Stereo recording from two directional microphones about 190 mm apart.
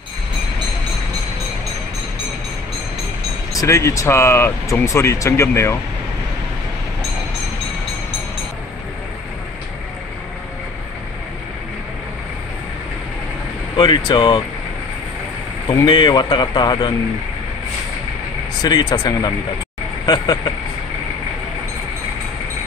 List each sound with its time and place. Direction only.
3.6 s speech: 15° left (ahead or behind)
13.7 s speech: 25° left (ahead or behind)
15.7 s speech: 25° left (ahead or behind)
18.6 s speech: 20° left (ahead or behind)